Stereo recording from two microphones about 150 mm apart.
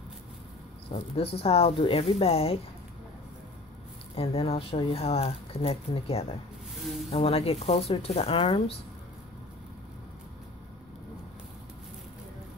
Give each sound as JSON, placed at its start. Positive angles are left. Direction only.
{"t": 0.9, "sound": "speech", "side_deg": 40}
{"t": 4.1, "sound": "speech", "side_deg": 40}